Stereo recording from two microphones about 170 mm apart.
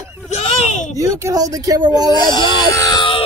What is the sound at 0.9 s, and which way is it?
Speech, 20° right (ahead or behind).